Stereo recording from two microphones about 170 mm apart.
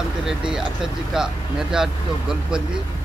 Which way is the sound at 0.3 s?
5° right (ahead or behind).